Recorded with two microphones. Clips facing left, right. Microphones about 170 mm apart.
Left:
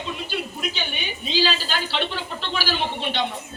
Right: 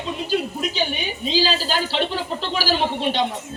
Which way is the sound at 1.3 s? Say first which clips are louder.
Right 3 dB; 40° right (ahead or behind).